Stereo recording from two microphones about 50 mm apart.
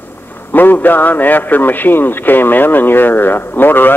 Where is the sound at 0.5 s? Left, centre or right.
Left.